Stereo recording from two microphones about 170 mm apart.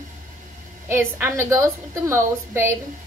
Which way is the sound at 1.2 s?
15° right (ahead or behind).